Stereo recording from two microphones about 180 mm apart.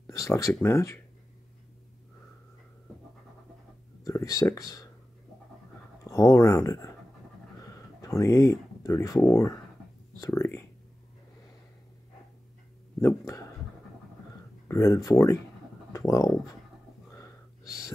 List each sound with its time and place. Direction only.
0.0 s speech: 15° left (ahead or behind)
4.0 s speech: 20° left (ahead or behind)
6.0 s speech: 15° left (ahead or behind)
14.7 s speech: 15° left (ahead or behind)
17.1 s whispering: 15° left (ahead or behind)